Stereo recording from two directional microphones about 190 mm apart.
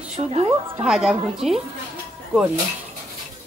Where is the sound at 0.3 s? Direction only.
30° right (ahead or behind).